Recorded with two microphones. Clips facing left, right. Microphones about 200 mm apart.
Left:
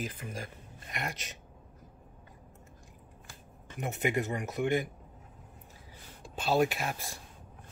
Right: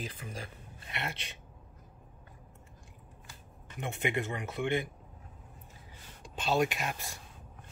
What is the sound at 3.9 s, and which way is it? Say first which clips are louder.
Speech: left 2 dB; 40° left (ahead or behind).